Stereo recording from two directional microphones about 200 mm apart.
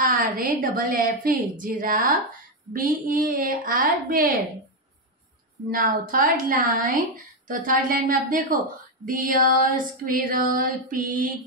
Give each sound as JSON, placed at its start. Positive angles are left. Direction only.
{"t": 0.0, "sound": "a woman's voice", "side_deg": -40}
{"t": 5.7, "sound": "a woman's voice", "side_deg": -45}